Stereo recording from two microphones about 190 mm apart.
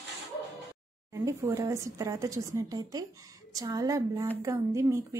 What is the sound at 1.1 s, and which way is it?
Speech, 15° right (ahead or behind).